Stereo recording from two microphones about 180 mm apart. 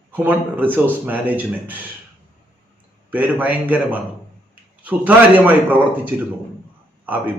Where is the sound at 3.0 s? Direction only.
10° right (ahead or behind).